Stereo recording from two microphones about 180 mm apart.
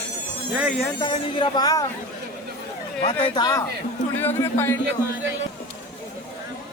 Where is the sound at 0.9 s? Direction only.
25° left (ahead or behind).